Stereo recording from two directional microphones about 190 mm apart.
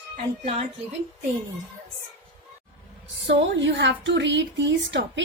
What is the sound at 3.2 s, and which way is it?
A woman's voice, 70° right (ahead or behind).